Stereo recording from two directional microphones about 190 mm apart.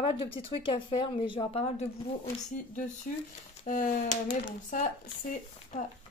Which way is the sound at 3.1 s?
45° left (ahead or behind).